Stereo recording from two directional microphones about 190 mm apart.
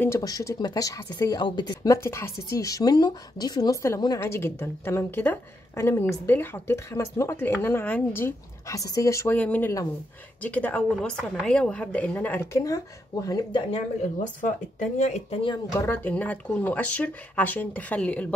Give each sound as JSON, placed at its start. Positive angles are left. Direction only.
{"t": 0.0, "sound": "a woman's voice", "side_deg": 15}
{"t": 14.2, "sound": "speech", "side_deg": 40}
{"t": 15.8, "sound": "a woman's voice", "side_deg": 10}